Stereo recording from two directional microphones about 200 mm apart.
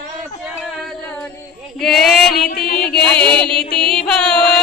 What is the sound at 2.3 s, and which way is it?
Music, 50° left (ahead or behind).